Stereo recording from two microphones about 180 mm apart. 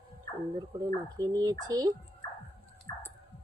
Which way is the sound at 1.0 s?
20° right (ahead or behind).